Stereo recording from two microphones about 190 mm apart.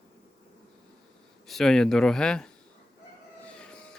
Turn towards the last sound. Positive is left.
turn(degrees=5)  # may be behind; listen again after turning